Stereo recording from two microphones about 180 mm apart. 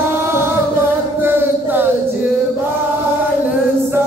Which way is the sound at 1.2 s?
10° right (ahead or behind).